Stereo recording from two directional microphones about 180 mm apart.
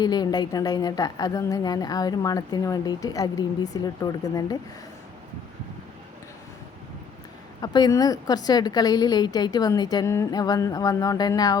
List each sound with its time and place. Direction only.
0.0 s a woman's voice: 20° left (ahead or behind)
7.6 s a woman's voice: 20° left (ahead or behind)